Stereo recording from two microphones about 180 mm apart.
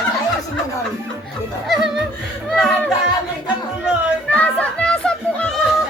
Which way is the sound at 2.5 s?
5° left (ahead or behind).